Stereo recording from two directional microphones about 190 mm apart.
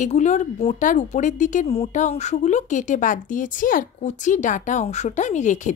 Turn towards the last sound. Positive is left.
turn(degrees=40)  # may be behind; listen again after turning